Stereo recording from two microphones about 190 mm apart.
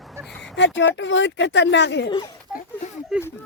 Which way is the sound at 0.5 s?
70° left (ahead or behind).